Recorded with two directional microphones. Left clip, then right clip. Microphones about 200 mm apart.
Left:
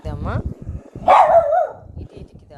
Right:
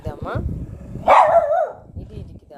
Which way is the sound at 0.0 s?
10° right (ahead or behind).